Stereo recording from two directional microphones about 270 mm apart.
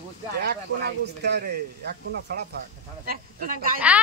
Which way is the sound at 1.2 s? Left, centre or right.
Right.